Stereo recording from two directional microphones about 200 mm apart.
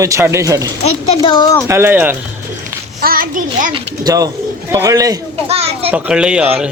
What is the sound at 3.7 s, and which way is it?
Speech, 20° right (ahead or behind).